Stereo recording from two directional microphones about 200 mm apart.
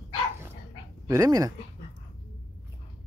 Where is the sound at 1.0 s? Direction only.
15° right (ahead or behind).